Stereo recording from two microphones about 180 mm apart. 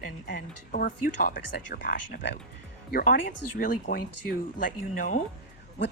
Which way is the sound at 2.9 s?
45° left (ahead or behind).